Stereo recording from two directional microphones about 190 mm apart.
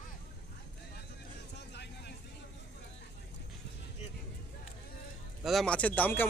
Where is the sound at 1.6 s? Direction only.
60° left (ahead or behind).